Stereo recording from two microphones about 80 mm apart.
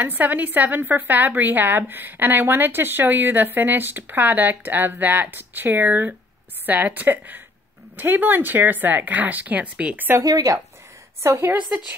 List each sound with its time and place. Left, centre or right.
0.0 s a woman's voice: right
10.2 s speech: right
11.2 s a woman's voice: right